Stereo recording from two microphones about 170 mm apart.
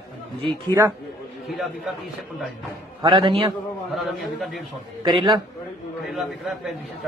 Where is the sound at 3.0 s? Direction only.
30° right (ahead or behind).